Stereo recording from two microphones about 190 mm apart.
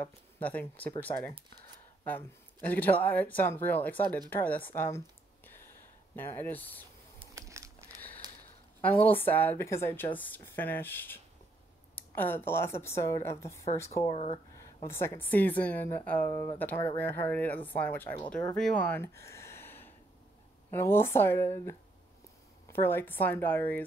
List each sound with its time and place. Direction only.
0.0 s speech: 10° left (ahead or behind)
2.7 s speech: 10° left (ahead or behind)
4.7 s a sound: 10° left (ahead or behind)
6.1 s speech: 10° left (ahead or behind)
7.2 s crumpling: 15° right (ahead or behind)
8.8 s speech: 10° left (ahead or behind)
14.1 s speech: 35° left (ahead or behind)
14.6 s speech: 15° left (ahead or behind)